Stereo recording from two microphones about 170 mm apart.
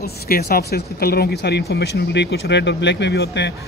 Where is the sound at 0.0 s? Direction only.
65° left (ahead or behind).